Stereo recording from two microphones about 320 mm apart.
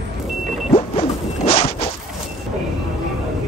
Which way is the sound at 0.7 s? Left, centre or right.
Centre.